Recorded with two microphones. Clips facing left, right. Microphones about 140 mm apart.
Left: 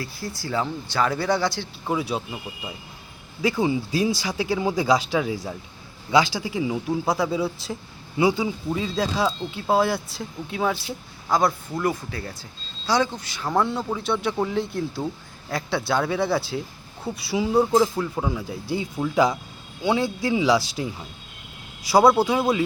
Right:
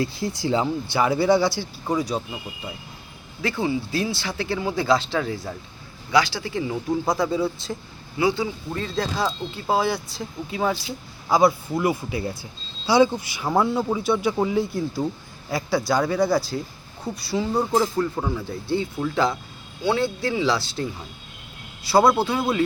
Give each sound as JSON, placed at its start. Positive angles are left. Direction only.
{"t": 0.0, "sound": "speech", "side_deg": -20}
{"t": 1.9, "sound": "speech", "side_deg": 5}
{"t": 3.4, "sound": "speech", "side_deg": 15}
{"t": 8.2, "sound": "speech", "side_deg": 15}
{"t": 8.8, "sound": "speech", "side_deg": 5}
{"t": 21.8, "sound": "speech", "side_deg": 10}